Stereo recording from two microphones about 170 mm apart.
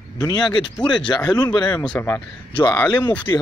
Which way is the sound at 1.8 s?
10° left (ahead or behind).